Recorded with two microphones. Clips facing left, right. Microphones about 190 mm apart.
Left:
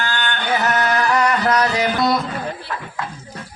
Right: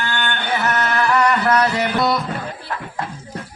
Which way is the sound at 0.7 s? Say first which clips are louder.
Even; 40° left (ahead or behind).